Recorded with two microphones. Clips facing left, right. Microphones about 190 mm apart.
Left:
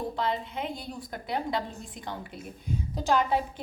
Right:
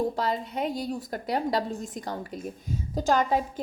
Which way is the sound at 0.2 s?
40° right (ahead or behind).